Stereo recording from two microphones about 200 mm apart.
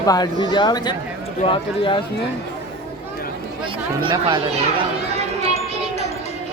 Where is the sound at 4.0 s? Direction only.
25° right (ahead or behind).